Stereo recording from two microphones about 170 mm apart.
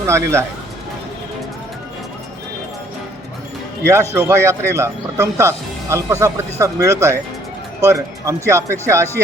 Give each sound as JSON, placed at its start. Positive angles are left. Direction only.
{"t": 0.0, "sound": "speech", "side_deg": -15}
{"t": 4.1, "sound": "speech", "side_deg": -15}